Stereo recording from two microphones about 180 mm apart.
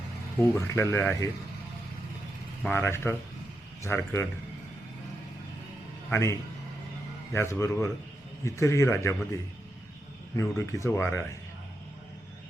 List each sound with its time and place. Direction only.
0.5 s speech: 15° left (ahead or behind)
2.6 s speech: 15° left (ahead or behind)
6.1 s a man's voice: 15° left (ahead or behind)
7.3 s speech: 15° left (ahead or behind)